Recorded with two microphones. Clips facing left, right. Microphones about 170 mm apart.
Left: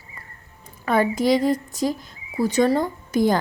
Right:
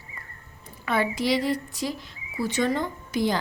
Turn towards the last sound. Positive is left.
turn(degrees=45)  # may be behind; listen again after turning